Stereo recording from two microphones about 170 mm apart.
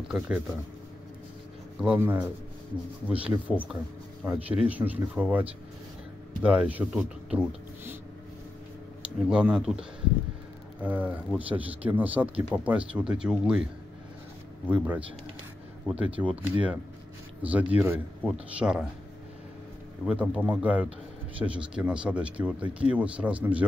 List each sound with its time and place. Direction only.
1.8 s speech: 10° right (ahead or behind)
9.3 s speech: 5° right (ahead or behind)
14.7 s speech: 10° right (ahead or behind)
20.1 s speech: 10° right (ahead or behind)